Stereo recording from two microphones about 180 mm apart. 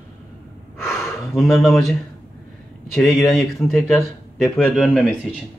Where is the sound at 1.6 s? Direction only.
Centre (ahead or behind).